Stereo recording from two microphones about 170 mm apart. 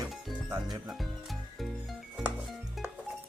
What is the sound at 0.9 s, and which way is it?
Music, centre (ahead or behind).